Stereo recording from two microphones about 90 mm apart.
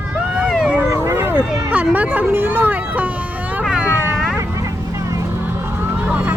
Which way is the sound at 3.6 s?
10° right (ahead or behind).